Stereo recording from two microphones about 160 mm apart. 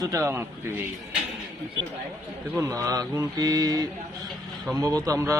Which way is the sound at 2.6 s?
20° right (ahead or behind).